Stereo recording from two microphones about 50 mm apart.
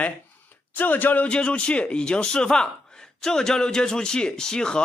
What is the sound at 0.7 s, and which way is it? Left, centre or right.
Speech, left.